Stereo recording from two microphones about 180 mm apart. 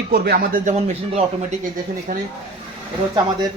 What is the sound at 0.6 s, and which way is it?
Speech, 40° right (ahead or behind).